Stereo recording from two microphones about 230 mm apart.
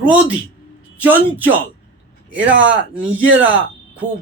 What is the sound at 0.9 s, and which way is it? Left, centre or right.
Speech, centre.